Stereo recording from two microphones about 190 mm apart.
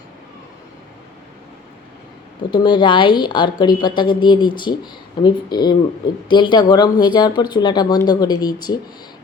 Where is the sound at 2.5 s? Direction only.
25° left (ahead or behind).